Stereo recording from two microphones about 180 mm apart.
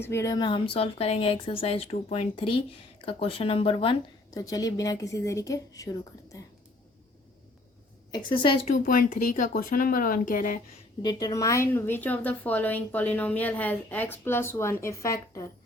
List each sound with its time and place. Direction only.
0.0 s a woman's voice: 15° left (ahead or behind)
8.1 s a woman's voice: 25° left (ahead or behind)
8.7 s speech: 45° left (ahead or behind)
11.0 s a woman's voice: 20° left (ahead or behind)